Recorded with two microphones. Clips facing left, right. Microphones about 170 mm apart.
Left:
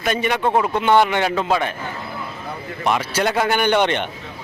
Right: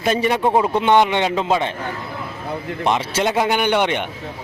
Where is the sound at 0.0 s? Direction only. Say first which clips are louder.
Right 2 dB; 30° right (ahead or behind).